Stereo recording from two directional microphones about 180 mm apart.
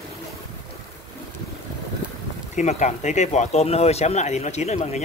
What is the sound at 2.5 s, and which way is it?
Speech, 40° left (ahead or behind).